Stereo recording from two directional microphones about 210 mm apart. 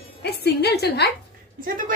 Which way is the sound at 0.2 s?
50° left (ahead or behind).